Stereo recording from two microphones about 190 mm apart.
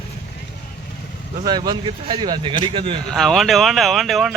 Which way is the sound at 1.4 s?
20° right (ahead or behind).